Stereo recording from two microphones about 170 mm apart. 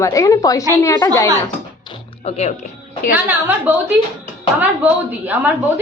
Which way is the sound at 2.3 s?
40° left (ahead or behind).